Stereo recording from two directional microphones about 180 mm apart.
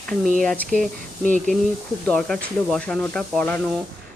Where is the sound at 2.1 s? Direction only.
5° left (ahead or behind).